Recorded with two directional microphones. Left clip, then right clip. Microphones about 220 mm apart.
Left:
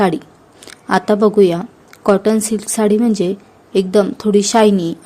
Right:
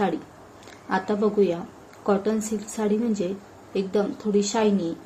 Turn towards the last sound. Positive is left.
turn(degrees=50)  # may be behind; listen again after turning